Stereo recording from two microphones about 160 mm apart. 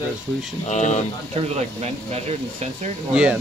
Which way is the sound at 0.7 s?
45° left (ahead or behind).